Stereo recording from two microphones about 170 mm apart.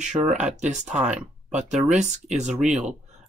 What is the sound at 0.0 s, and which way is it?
Speech, 45° right (ahead or behind).